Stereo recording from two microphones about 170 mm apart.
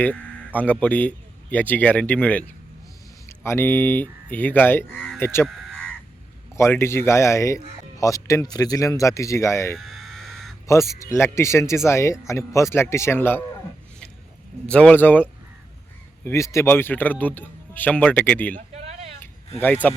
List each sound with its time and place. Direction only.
0.0 s speech: 10° left (ahead or behind)
5.2 s a sound: 15° left (ahead or behind)
6.6 s speech: 15° left (ahead or behind)
9.7 s crow: centre (ahead or behind)
10.7 s speech: 15° left (ahead or behind)
14.7 s speech: 5° left (ahead or behind)
18.5 s a sound: 40° right (ahead or behind)
19.5 s speech: 10° left (ahead or behind)